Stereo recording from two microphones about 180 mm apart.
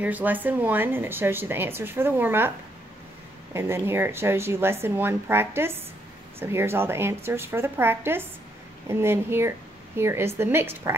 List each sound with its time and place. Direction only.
0.0 s speech: 10° right (ahead or behind)
3.5 s speech: 15° right (ahead or behind)